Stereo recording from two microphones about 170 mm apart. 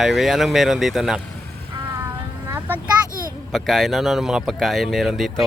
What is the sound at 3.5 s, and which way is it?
Speech, centre (ahead or behind).